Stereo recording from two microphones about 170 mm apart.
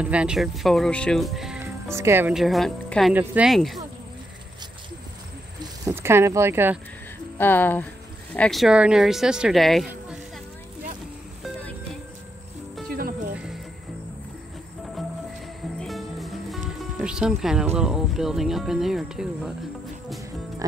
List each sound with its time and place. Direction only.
0.0 s speech: 5° right (ahead or behind)
1.9 s speech: 15° right (ahead or behind)
2.3 s speech: centre (ahead or behind)
5.9 s speech: 15° right (ahead or behind)
7.3 s speech: 10° left (ahead or behind)
12.9 s music: 60° right (ahead or behind)
13.3 s music: 5° right (ahead or behind)
15.8 s music: centre (ahead or behind)
17.7 s speech: 5° right (ahead or behind)